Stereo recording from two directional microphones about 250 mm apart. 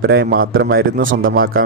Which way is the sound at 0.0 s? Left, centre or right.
Right.